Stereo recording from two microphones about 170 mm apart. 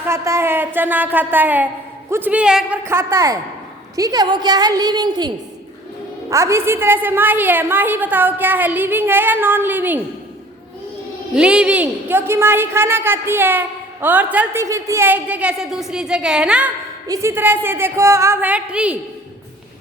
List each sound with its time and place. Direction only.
0.0 s a woman's voice: 15° right (ahead or behind)
6.3 s a woman's voice: 15° right (ahead or behind)
11.3 s a woman's voice: 5° right (ahead or behind)